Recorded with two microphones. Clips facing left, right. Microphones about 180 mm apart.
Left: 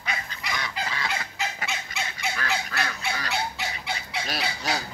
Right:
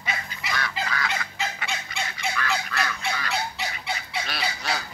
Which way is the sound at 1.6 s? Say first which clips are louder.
Right 1 dB; centre (ahead or behind).